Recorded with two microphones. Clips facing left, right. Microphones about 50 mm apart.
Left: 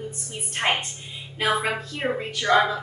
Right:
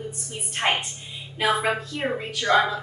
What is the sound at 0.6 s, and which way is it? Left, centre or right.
Speech, centre.